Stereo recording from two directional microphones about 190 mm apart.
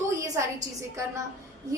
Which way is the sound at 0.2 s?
15° right (ahead or behind).